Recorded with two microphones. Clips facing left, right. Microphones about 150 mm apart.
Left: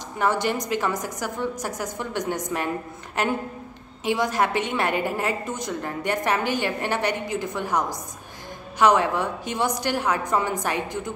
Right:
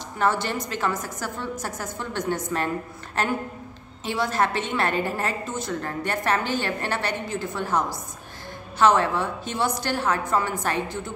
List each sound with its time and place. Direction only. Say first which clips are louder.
0.2 s a woman's voice: left 1 dB; 15° left (ahead or behind)